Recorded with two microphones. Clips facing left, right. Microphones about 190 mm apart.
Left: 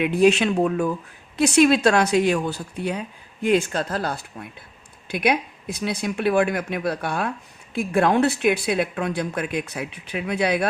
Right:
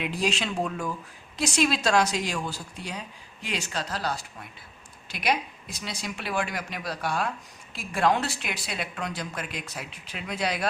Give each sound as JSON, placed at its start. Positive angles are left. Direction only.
{"t": 0.0, "sound": "speech", "side_deg": 60}